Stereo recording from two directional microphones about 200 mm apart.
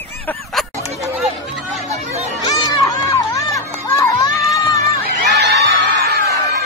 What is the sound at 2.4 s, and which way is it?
Music, 20° left (ahead or behind).